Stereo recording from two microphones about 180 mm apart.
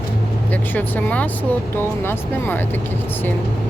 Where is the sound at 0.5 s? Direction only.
10° left (ahead or behind).